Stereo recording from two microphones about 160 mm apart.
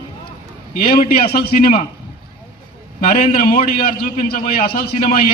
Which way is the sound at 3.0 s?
65° left (ahead or behind).